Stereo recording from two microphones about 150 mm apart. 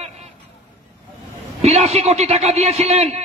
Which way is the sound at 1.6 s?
45° right (ahead or behind).